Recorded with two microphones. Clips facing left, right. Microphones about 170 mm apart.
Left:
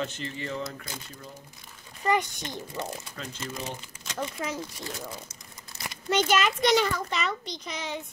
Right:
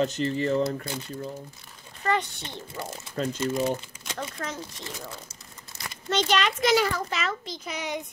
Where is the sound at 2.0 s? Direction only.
10° left (ahead or behind).